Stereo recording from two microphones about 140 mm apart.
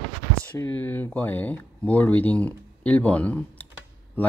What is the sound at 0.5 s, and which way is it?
Speech, 10° left (ahead or behind).